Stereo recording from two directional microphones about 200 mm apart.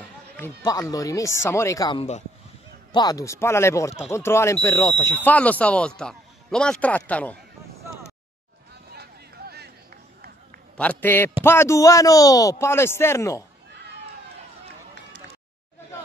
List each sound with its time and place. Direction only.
0.7 s speech: 15° left (ahead or behind)
2.9 s speech: 20° left (ahead or behind)
8.9 s a sound: 55° right (ahead or behind)
10.8 s speech: 10° left (ahead or behind)